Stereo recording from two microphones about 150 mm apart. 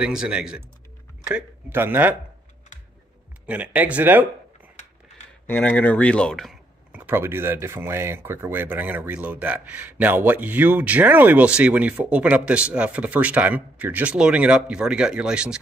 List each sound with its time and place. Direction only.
0.0 s speech: 5° right (ahead or behind)
3.4 s speech: 10° right (ahead or behind)
5.5 s speech: 10° left (ahead or behind); by 15.6 s 5° right (ahead or behind)